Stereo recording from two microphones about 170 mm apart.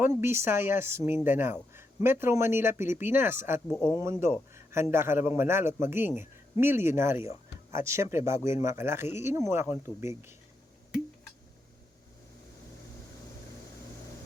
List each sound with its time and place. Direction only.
0.0 s a man's voice: 15° right (ahead or behind)